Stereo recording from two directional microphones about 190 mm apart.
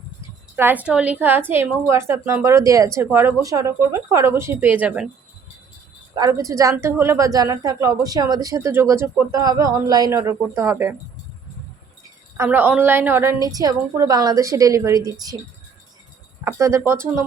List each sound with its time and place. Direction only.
0.5 s a woman's voice: 10° right (ahead or behind)
6.1 s a woman's voice: 20° right (ahead or behind)
12.4 s a woman's voice: 10° right (ahead or behind)
16.4 s a woman's voice: 15° right (ahead or behind)